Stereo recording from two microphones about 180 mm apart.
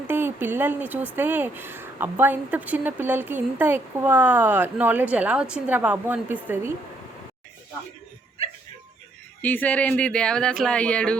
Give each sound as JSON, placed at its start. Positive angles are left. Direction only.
{"t": 0.1, "sound": "speech", "side_deg": -10}
{"t": 9.4, "sound": "speech", "side_deg": 10}